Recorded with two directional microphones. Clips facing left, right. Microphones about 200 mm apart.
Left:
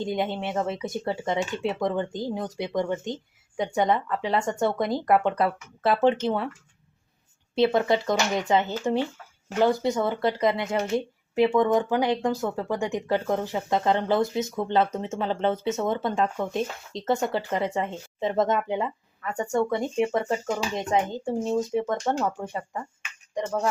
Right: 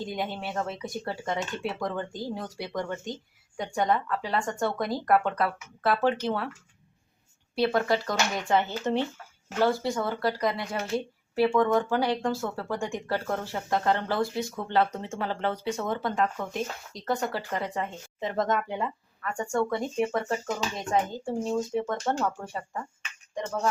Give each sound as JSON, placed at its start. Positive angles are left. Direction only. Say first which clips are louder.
{"t": 0.0, "sound": "speech", "louder": "left 5 dB", "side_deg": 25}
{"t": 7.5, "sound": "speech", "louder": "left 3 dB", "side_deg": 20}